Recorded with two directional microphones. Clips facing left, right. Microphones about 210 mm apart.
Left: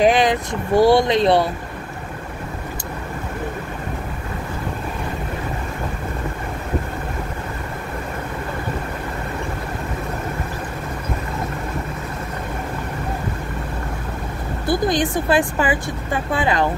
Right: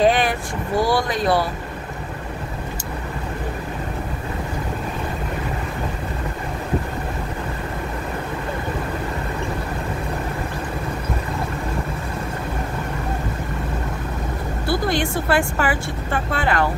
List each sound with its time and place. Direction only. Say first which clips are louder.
0.0 s speech: left 2 dB; 15° left (ahead or behind)
14.7 s speech: left 3 dB; 20° left (ahead or behind)